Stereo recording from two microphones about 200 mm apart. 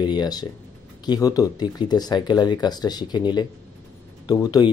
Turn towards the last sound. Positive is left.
turn(degrees=20)  # may be behind; listen again after turning